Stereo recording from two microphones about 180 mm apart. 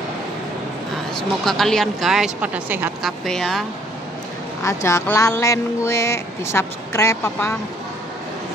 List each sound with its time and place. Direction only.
1.1 s speech: centre (ahead or behind)
3.1 s speech: centre (ahead or behind)
4.6 s speech: 15° left (ahead or behind)